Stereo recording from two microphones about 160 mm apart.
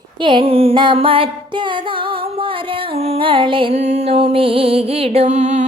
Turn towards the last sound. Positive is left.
turn(degrees=-45)  # may be behind; listen again after turning